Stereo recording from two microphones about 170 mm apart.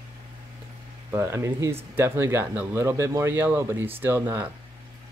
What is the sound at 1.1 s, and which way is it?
Speech, 15° right (ahead or behind).